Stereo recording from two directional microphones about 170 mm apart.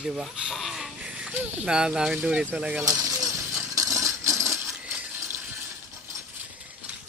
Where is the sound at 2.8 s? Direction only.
20° right (ahead or behind).